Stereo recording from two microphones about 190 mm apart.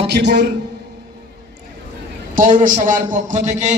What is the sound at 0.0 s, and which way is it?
Speech, 60° right (ahead or behind).